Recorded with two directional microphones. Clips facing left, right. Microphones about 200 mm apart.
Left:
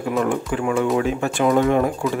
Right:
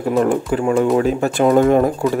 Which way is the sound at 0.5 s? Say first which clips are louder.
Right 4 dB; 35° right (ahead or behind).